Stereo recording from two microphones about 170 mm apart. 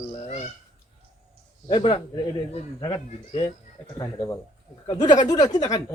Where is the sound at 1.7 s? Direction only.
25° left (ahead or behind).